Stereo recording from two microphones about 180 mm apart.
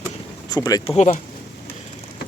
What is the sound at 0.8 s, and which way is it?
Speech, 40° left (ahead or behind).